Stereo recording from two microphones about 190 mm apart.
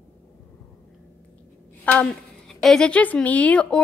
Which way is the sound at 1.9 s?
5° left (ahead or behind).